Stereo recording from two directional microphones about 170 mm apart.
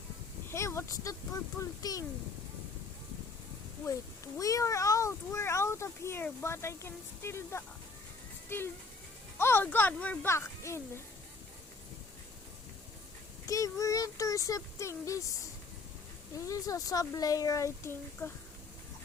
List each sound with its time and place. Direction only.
0.5 s speech: 15° left (ahead or behind)
4.4 s speech: 20° left (ahead or behind)
13.4 s speech: 20° left (ahead or behind)
16.5 s speech: 20° left (ahead or behind)